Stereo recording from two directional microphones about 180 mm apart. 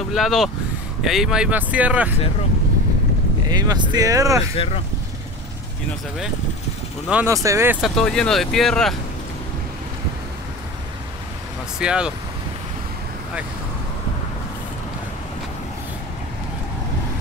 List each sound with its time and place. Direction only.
0.1 s speech: centre (ahead or behind)
3.4 s speech: 20° right (ahead or behind)
7.1 s speech: 5° right (ahead or behind)
7.9 s speech: 5° left (ahead or behind)
11.8 s speech: 5° right (ahead or behind)